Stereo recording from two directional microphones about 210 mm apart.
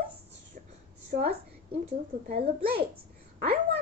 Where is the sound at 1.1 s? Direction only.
45° right (ahead or behind).